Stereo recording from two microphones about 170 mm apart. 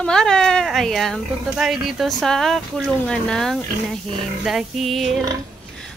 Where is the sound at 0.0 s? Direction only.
5° left (ahead or behind).